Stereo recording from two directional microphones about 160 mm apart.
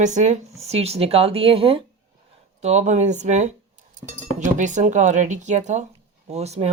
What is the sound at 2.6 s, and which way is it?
Speech, 45° right (ahead or behind).